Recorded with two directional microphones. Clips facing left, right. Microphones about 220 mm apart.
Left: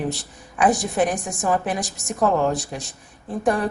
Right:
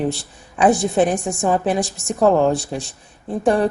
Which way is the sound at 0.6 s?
30° right (ahead or behind).